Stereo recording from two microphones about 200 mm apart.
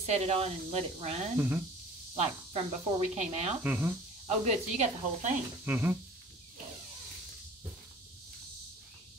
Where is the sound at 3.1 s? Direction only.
35° right (ahead or behind).